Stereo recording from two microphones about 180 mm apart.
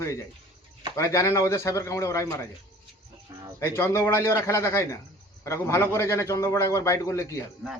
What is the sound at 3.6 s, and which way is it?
A man's voice, 15° left (ahead or behind).